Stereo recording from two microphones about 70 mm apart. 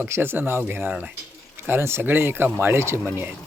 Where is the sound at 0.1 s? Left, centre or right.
Right.